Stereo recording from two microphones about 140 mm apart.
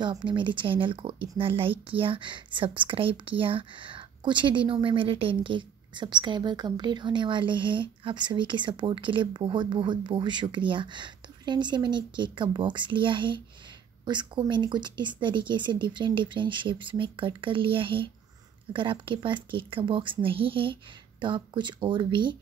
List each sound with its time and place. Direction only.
0.0 s a woman's voice: 35° right (ahead or behind)